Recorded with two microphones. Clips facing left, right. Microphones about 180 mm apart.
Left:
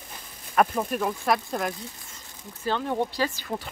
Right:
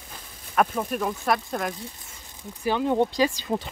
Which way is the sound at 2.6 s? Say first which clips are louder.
Right 4 dB; 15° right (ahead or behind).